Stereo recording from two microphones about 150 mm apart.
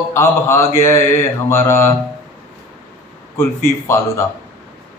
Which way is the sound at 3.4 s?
15° left (ahead or behind).